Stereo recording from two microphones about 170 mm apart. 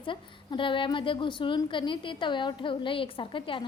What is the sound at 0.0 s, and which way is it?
A woman's voice, 30° left (ahead or behind).